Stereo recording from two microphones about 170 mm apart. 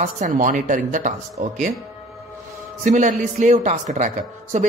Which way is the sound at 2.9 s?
45° right (ahead or behind).